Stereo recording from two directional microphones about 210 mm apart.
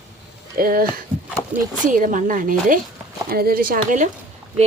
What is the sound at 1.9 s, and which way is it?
A woman's voice, 40° right (ahead or behind).